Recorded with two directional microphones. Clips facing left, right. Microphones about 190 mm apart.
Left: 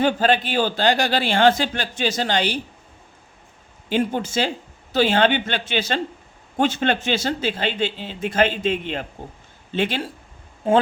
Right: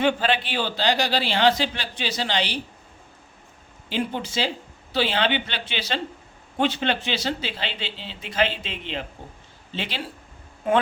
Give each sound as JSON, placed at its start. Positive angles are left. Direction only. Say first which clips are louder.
{"t": 0.0, "sound": "a man's voice", "louder": "left 3 dB", "side_deg": 45}
{"t": 3.8, "sound": "a man's voice", "louder": "left 5 dB", "side_deg": 50}
{"t": 10.6, "sound": "speech", "louder": "left 4 dB", "side_deg": 30}